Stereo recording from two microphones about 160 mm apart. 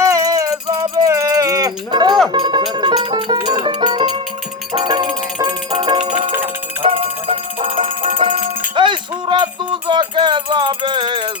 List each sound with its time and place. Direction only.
0.0 s music: 20° right (ahead or behind)